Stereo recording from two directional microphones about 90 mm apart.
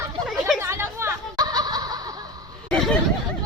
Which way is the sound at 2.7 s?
5° left (ahead or behind).